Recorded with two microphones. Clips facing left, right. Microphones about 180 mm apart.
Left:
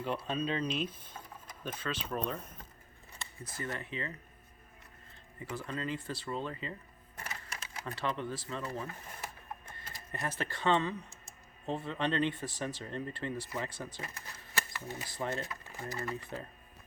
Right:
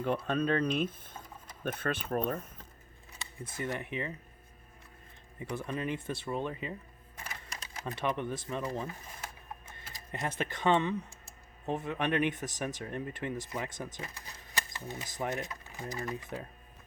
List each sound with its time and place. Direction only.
0.0 s speech: 50° right (ahead or behind)
3.4 s speech: 20° right (ahead or behind)
5.4 s speech: 20° right (ahead or behind)
9.9 s speech: 20° right (ahead or behind)